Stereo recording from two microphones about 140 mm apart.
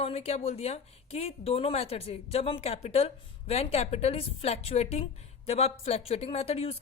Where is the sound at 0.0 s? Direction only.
50° left (ahead or behind).